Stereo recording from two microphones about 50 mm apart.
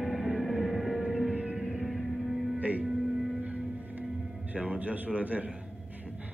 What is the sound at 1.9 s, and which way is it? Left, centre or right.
Music, centre.